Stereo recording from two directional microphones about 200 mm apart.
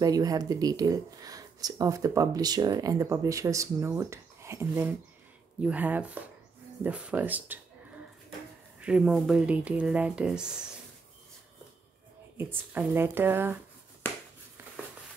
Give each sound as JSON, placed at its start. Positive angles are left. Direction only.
{"t": 0.0, "sound": "speech", "side_deg": -20}
{"t": 8.7, "sound": "speech", "side_deg": -5}
{"t": 12.4, "sound": "speech", "side_deg": -10}
{"t": 14.0, "sound": "a sound", "side_deg": 10}